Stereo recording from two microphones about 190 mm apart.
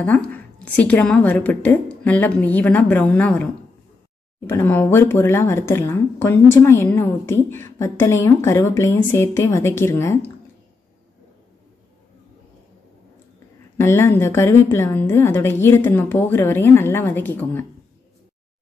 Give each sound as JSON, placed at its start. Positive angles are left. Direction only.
{"t": 0.0, "sound": "a woman's voice", "side_deg": 10}
{"t": 4.5, "sound": "a woman's voice", "side_deg": 10}
{"t": 13.7, "sound": "a woman's voice", "side_deg": 10}